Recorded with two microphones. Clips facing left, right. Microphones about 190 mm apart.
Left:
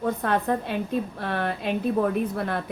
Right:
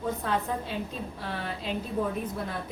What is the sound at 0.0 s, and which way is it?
A woman's voice, 60° left (ahead or behind).